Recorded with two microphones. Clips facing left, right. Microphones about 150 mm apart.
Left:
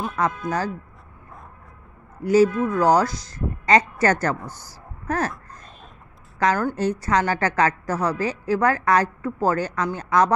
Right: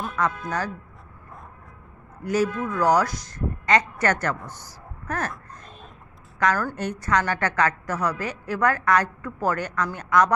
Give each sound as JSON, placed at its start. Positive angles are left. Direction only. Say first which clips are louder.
{"t": 0.0, "sound": "a woman's voice", "louder": "left 2 dB", "side_deg": 30}
{"t": 2.2, "sound": "a woman's voice", "louder": "left 7 dB", "side_deg": 30}
{"t": 4.4, "sound": "a man's voice", "louder": "left 2 dB", "side_deg": 5}
{"t": 4.6, "sound": "a sound", "louder": "left 6 dB", "side_deg": 35}
{"t": 6.4, "sound": "a woman's voice", "louder": "left 3 dB", "side_deg": 25}